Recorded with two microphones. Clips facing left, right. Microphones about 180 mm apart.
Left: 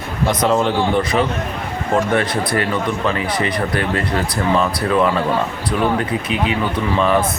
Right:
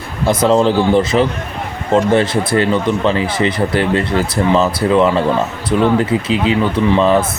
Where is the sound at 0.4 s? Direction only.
30° right (ahead or behind).